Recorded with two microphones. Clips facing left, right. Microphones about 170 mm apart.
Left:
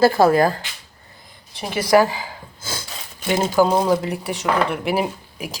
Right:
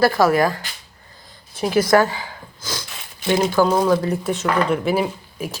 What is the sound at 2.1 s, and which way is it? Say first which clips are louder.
Gasp: left 1 dB; 30° left (ahead or behind).